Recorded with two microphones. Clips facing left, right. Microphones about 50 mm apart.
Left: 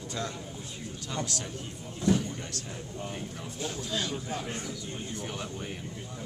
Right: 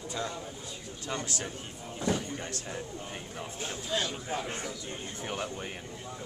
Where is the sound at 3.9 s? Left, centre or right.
Centre.